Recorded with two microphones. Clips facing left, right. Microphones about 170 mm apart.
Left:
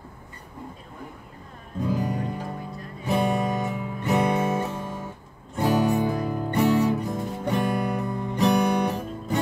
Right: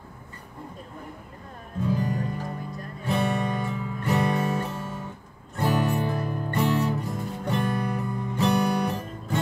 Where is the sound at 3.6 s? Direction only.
20° left (ahead or behind).